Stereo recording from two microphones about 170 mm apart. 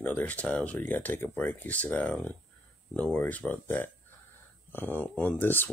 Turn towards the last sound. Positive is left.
turn(degrees=10)  # may be behind; listen again after turning